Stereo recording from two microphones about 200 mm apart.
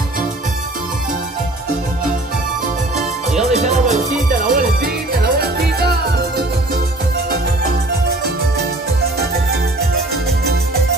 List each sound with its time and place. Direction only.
3.0 s music: centre (ahead or behind)
3.5 s music: 35° right (ahead or behind); by 5.9 s 50° right (ahead or behind)
8.5 s music: 50° right (ahead or behind)